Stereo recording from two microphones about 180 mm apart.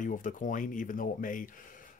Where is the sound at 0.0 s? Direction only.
45° left (ahead or behind).